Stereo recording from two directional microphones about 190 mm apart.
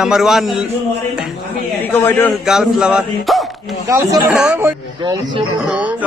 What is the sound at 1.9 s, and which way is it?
Speech, 10° left (ahead or behind).